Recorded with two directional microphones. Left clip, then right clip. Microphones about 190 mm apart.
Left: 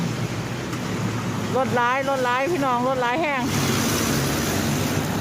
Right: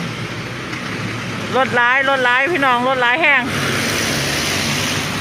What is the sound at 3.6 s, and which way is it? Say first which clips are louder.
Vehicle: right 5 dB; 50° left (ahead or behind).